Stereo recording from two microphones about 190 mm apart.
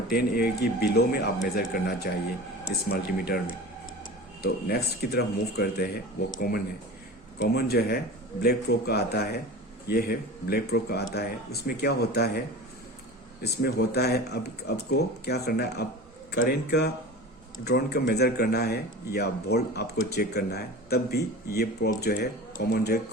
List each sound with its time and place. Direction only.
0.1 s speech: 55° left (ahead or behind)
4.4 s speech: 55° left (ahead or behind)
7.3 s speech: 55° left (ahead or behind)
13.4 s speech: 55° left (ahead or behind)